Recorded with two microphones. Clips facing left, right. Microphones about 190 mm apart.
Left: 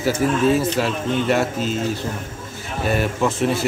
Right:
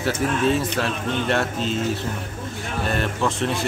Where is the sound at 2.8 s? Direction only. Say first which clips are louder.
Left 4 dB; 5° left (ahead or behind).